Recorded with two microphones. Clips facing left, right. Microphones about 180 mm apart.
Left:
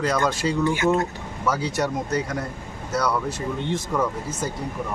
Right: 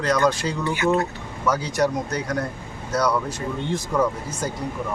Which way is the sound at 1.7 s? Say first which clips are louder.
Right 1 dB; 5° left (ahead or behind).